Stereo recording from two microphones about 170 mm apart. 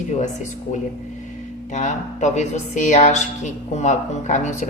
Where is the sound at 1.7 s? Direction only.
45° left (ahead or behind).